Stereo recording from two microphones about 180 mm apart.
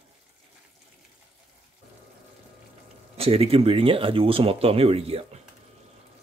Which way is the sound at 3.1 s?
35° right (ahead or behind).